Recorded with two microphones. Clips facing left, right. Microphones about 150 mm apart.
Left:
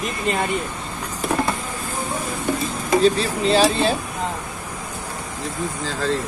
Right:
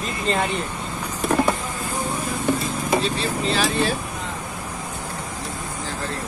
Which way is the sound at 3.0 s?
35° left (ahead or behind).